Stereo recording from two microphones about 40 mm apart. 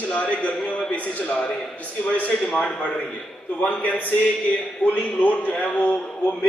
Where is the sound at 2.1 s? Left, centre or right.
Left.